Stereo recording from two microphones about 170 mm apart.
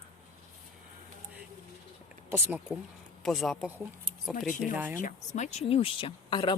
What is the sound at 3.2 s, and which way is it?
Speech, centre (ahead or behind).